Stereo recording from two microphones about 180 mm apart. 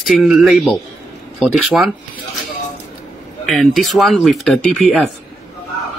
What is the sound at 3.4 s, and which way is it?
Speech, centre (ahead or behind).